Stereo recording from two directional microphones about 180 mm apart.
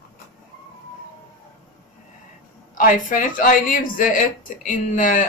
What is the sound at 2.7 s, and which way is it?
A woman's voice, 45° left (ahead or behind).